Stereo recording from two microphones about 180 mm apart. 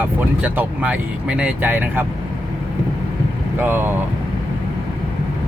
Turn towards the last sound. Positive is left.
turn(degrees=-10)  # may be behind; listen again after turning